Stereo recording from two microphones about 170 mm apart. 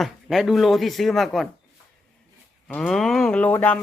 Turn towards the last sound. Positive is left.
turn(degrees=10)  # may be behind; listen again after turning